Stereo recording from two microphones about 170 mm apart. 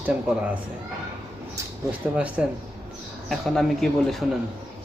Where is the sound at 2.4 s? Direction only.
5° right (ahead or behind).